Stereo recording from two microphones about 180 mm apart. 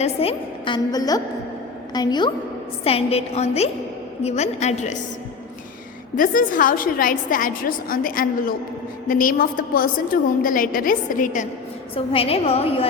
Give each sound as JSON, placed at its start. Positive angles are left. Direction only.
{"t": 0.0, "sound": "a woman's voice", "side_deg": 35}
{"t": 2.8, "sound": "a woman's voice", "side_deg": 35}
{"t": 6.1, "sound": "a woman's voice", "side_deg": 50}
{"t": 11.9, "sound": "a woman's voice", "side_deg": 30}